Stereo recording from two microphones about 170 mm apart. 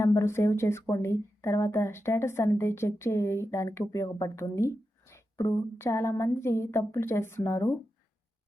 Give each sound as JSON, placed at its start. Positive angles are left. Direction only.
{"t": 0.0, "sound": "a woman's voice", "side_deg": 15}